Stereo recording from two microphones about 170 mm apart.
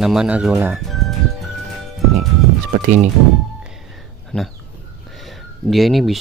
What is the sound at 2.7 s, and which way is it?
Speech, 45° right (ahead or behind).